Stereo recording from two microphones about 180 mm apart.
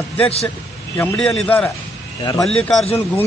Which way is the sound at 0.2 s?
35° left (ahead or behind).